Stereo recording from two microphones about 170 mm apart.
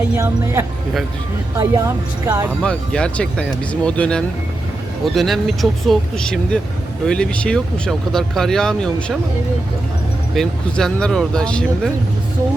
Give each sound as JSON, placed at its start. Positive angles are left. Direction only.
{"t": 1.5, "sound": "speech", "side_deg": -20}
{"t": 2.6, "sound": "speech", "side_deg": 5}
{"t": 10.3, "sound": "speech", "side_deg": 5}